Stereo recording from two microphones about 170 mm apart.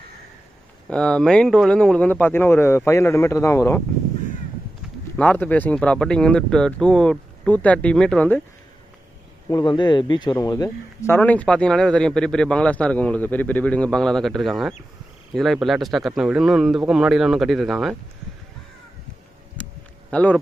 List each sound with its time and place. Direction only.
0.8 s speech: 5° left (ahead or behind)
5.1 s speech: 10° left (ahead or behind)
9.5 s speech: 25° left (ahead or behind); by 17.9 s centre (ahead or behind)
19.5 s a sound: 5° left (ahead or behind)